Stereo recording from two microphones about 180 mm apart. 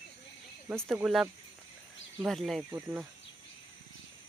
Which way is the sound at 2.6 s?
15° right (ahead or behind).